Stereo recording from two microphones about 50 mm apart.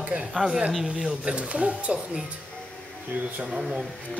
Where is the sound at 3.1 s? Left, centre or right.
Right.